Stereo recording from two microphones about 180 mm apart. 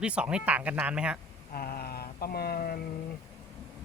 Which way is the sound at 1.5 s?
55° left (ahead or behind).